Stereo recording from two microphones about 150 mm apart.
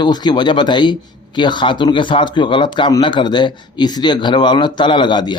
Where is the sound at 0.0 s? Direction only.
30° left (ahead or behind).